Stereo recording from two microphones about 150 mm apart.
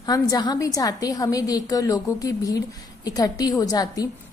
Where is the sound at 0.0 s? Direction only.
25° left (ahead or behind).